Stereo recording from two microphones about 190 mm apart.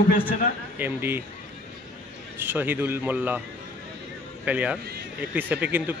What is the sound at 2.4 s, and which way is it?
A man's voice, 10° right (ahead or behind).